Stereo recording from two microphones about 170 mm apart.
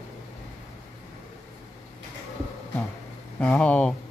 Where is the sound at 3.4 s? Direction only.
5° left (ahead or behind).